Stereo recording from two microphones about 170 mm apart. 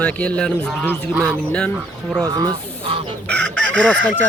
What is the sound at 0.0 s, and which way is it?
Speech, 5° left (ahead or behind).